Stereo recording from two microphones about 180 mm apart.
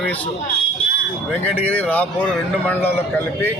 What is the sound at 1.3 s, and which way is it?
Speech, 10° left (ahead or behind).